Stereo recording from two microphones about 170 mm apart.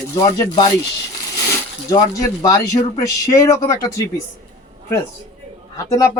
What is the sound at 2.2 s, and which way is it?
Speech, 20° left (ahead or behind).